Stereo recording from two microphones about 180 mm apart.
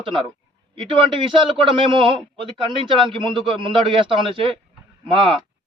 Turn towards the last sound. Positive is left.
turn(degrees=-30)  # may be behind; listen again after turning